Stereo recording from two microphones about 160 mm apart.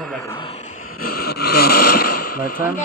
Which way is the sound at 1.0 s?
70° left (ahead or behind).